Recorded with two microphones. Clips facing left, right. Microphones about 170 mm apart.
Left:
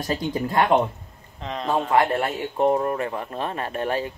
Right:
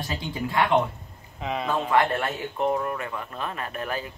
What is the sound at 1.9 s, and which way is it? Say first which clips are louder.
Speech: left 2 dB; 25° left (ahead or behind).